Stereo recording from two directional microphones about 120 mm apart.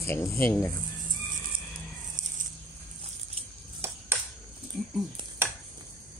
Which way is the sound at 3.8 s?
20° right (ahead or behind).